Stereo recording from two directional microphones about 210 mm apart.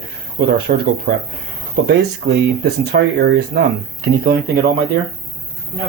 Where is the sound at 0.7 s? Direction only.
45° right (ahead or behind).